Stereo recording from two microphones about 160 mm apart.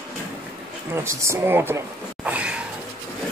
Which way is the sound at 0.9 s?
15° right (ahead or behind).